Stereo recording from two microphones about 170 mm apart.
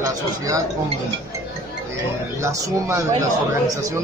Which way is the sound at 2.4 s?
20° right (ahead or behind).